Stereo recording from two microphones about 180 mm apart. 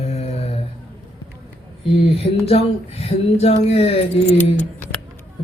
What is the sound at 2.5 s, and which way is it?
Speech, 35° left (ahead or behind).